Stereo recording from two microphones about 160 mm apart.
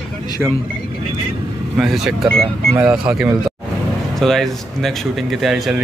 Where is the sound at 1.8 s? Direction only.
Centre (ahead or behind).